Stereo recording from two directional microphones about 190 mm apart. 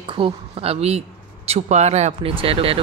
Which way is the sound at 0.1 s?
30° right (ahead or behind).